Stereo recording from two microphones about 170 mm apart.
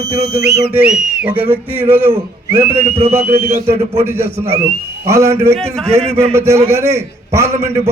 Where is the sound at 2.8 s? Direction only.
35° right (ahead or behind).